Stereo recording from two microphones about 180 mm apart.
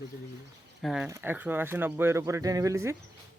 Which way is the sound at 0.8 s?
Centre (ahead or behind).